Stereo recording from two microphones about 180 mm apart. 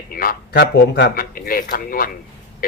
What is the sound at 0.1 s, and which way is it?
A man's voice, 55° left (ahead or behind).